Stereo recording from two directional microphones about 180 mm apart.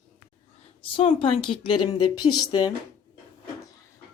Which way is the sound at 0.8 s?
35° left (ahead or behind).